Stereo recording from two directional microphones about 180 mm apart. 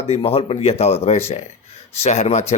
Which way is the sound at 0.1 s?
30° left (ahead or behind).